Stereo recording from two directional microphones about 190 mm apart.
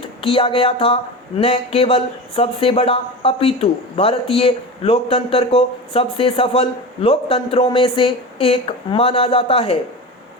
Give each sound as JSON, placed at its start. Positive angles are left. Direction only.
{"t": 0.2, "sound": "speech", "side_deg": 30}